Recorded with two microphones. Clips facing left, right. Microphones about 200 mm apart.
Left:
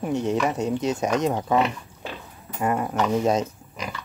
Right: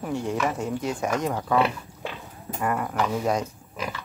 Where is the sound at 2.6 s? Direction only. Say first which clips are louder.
Left 2 dB; 20° left (ahead or behind).